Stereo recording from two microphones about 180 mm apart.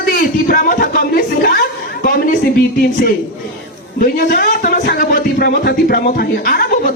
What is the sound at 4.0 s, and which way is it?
Speech, 50° left (ahead or behind).